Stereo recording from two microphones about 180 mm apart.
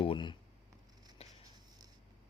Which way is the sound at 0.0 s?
30° left (ahead or behind).